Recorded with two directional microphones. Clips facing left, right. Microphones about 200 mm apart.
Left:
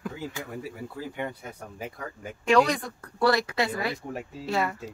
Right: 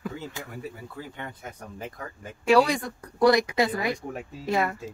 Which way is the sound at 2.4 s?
10° right (ahead or behind).